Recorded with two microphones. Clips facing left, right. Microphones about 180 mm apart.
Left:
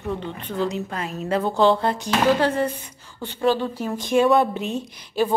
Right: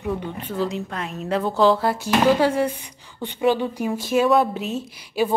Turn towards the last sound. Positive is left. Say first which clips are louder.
# even
turn(degrees=-5)  # may be behind; listen again after turning